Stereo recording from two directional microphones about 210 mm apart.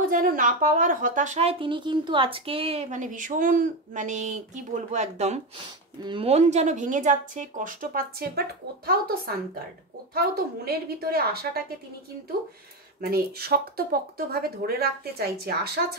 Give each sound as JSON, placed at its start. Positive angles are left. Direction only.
{"t": 0.1, "sound": "speech", "side_deg": -40}
{"t": 13.0, "sound": "speech", "side_deg": -45}